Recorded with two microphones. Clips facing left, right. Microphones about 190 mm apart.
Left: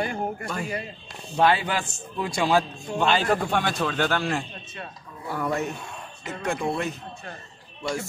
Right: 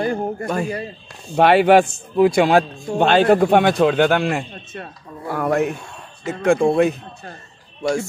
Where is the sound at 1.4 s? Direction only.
65° right (ahead or behind).